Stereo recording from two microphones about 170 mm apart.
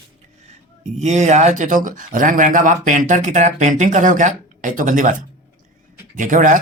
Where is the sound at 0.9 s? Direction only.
40° right (ahead or behind).